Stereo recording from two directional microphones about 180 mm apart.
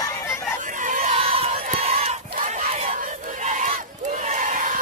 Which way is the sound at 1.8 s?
35° right (ahead or behind).